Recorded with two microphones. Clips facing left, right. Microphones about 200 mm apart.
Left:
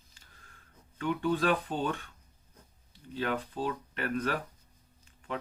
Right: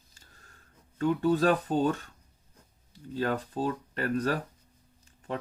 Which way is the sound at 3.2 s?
40° right (ahead or behind).